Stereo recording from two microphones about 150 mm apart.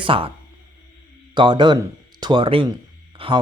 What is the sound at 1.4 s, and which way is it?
A man's voice, 30° right (ahead or behind).